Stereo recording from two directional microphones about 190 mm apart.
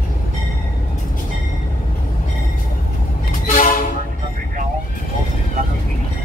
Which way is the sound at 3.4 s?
45° left (ahead or behind).